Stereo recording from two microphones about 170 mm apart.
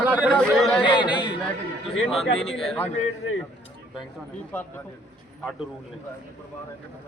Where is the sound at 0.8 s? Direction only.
30° left (ahead or behind).